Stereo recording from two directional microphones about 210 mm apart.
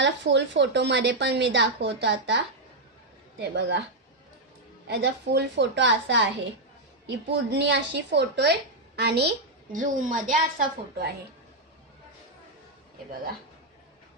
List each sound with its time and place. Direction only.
0.0 s a woman's voice: 55° right (ahead or behind)
4.9 s a woman's voice: 55° right (ahead or behind)
9.7 s a woman's voice: 40° right (ahead or behind)